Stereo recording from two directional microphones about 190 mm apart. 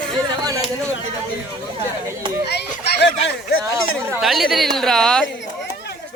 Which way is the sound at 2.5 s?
60° left (ahead or behind).